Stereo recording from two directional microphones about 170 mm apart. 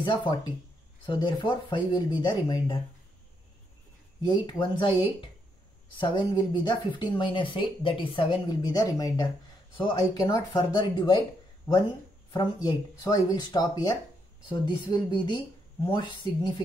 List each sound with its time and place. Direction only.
0.0 s speech: 30° left (ahead or behind)
4.3 s speech: 25° left (ahead or behind)